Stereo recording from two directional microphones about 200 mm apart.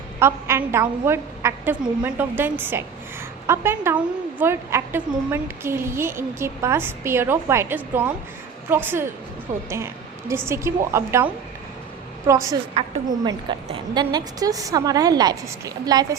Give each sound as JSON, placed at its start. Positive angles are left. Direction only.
{"t": 0.2, "sound": "a woman's voice", "side_deg": -15}
{"t": 12.3, "sound": "a woman's voice", "side_deg": -15}
{"t": 12.8, "sound": "a woman's voice", "side_deg": -35}
{"t": 13.2, "sound": "a woman's voice", "side_deg": -20}